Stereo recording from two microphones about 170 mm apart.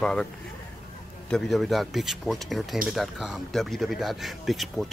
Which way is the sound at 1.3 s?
Centre (ahead or behind).